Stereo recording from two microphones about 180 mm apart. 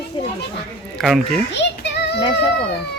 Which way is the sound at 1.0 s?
Centre (ahead or behind).